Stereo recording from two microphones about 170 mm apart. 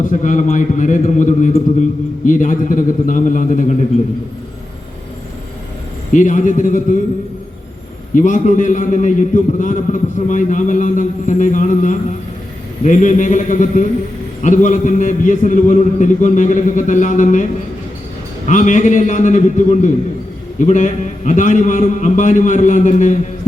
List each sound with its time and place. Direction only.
0.0 s a man's voice: 50° left (ahead or behind)
6.1 s a man's voice: 45° left (ahead or behind)
8.1 s a man's voice: 50° left (ahead or behind)
18.4 s a man's voice: 45° left (ahead or behind)